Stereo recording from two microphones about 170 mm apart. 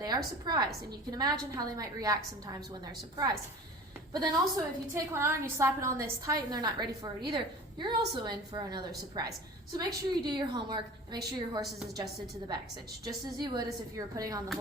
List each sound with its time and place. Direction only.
0.4 s a woman's voice: 25° right (ahead or behind)
13.4 s a woman's voice: 25° right (ahead or behind)